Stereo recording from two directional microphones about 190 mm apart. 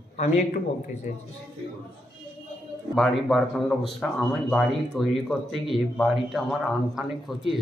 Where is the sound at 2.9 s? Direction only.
Centre (ahead or behind).